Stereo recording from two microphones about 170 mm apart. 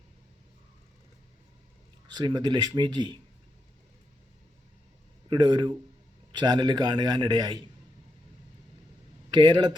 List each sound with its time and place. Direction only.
2.0 s a man's voice: 25° right (ahead or behind)
5.3 s a man's voice: 25° right (ahead or behind)
9.3 s a man's voice: 25° right (ahead or behind)